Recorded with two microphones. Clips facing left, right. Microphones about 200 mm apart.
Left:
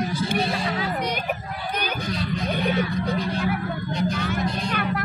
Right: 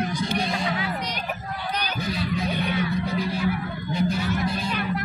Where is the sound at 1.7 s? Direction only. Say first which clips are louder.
Left 2 dB; 50° left (ahead or behind).